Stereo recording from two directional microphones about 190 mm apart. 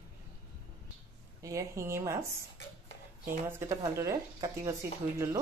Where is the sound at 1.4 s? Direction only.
15° right (ahead or behind).